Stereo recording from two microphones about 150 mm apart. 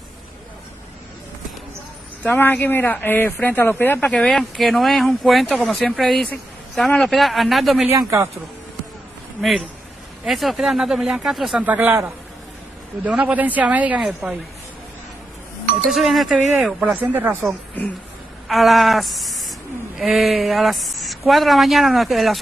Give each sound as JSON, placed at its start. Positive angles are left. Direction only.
{"t": 2.2, "sound": "speech", "side_deg": 10}
{"t": 4.0, "sound": "speech", "side_deg": 5}
{"t": 7.9, "sound": "speech", "side_deg": -20}
{"t": 9.4, "sound": "a woman's voice", "side_deg": 0}
{"t": 15.8, "sound": "a woman's voice", "side_deg": 0}
{"t": 18.5, "sound": "speech", "side_deg": 0}